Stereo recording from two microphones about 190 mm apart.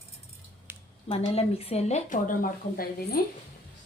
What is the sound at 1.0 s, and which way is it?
A woman's voice, 30° left (ahead or behind).